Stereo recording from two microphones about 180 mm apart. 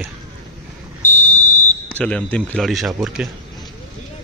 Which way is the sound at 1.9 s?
5° left (ahead or behind).